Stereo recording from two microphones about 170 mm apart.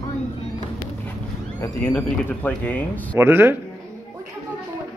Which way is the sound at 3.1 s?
10° right (ahead or behind).